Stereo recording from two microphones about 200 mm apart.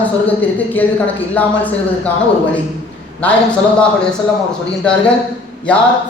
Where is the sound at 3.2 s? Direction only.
5° left (ahead or behind).